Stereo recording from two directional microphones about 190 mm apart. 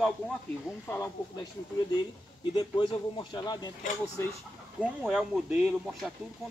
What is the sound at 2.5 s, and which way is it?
Speech, 25° left (ahead or behind).